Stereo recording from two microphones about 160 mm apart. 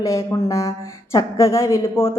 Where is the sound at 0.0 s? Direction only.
20° left (ahead or behind).